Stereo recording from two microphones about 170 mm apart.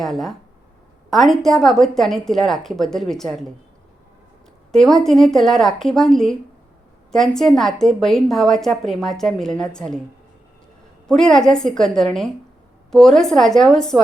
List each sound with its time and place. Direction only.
0.0 s a woman's voice: centre (ahead or behind)
4.7 s a woman's voice: centre (ahead or behind)
11.1 s a woman's voice: 5° left (ahead or behind)